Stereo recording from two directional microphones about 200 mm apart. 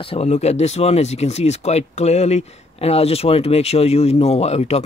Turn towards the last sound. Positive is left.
turn(degrees=30)  # may be behind; listen again after turning